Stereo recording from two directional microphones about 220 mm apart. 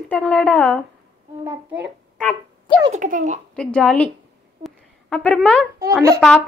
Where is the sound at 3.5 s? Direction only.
5° left (ahead or behind).